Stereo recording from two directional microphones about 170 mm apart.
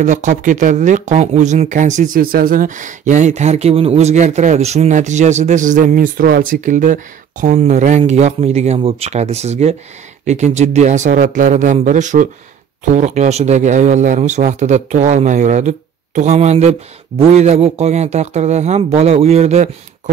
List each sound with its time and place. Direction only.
0.0 s speech: 45° right (ahead or behind)